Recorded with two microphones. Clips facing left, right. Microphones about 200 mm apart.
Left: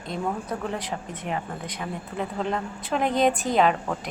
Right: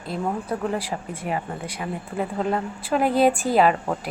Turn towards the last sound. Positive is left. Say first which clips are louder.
# right 3 dB
turn(degrees=-5)  # may be behind; listen again after turning